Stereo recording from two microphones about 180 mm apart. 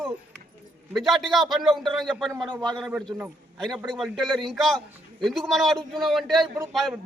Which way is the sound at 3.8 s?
Centre (ahead or behind).